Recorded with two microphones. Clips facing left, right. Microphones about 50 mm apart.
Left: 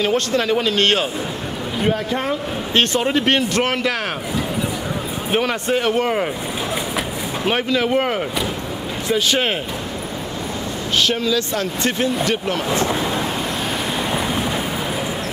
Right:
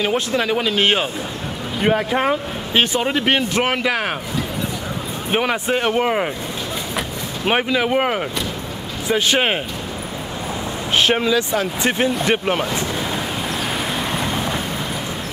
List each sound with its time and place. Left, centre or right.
0.0 s speech: centre
5.3 s speech: centre
7.4 s speech: centre
11.0 s speech: right
13.9 s vehicle: centre